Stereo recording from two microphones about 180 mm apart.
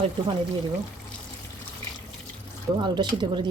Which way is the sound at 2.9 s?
25° right (ahead or behind).